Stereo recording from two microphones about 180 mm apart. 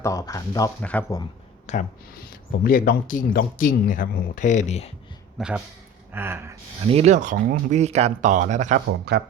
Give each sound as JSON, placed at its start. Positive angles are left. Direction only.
{"t": 0.0, "sound": "speech", "side_deg": 20}
{"t": 0.8, "sound": "speech", "side_deg": 10}
{"t": 1.7, "sound": "speech", "side_deg": 40}
{"t": 2.6, "sound": "speech", "side_deg": 55}
{"t": 5.4, "sound": "speech", "side_deg": -5}
{"t": 6.9, "sound": "speech", "side_deg": -40}
{"t": 9.1, "sound": "speech", "side_deg": -65}